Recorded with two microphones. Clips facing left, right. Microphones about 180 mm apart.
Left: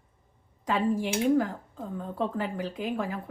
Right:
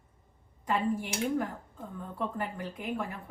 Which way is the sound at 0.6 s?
90° left.